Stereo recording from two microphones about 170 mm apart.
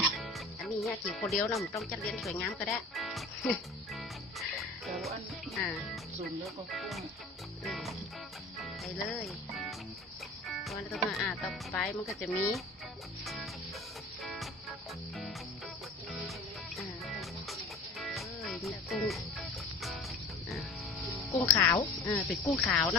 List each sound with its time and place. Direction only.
0.1 s music: centre (ahead or behind)
1.8 s speech: centre (ahead or behind)
2.4 s music: centre (ahead or behind)
6.2 s speech: centre (ahead or behind)
13.2 s music: centre (ahead or behind)
21.3 s speech: 15° left (ahead or behind)
22.6 s speech: 5° left (ahead or behind)